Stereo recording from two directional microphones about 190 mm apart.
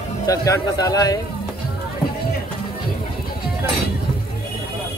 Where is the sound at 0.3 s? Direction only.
20° left (ahead or behind).